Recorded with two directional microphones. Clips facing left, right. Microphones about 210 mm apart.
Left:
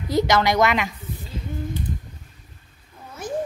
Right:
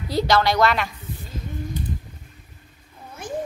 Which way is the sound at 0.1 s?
20° left (ahead or behind).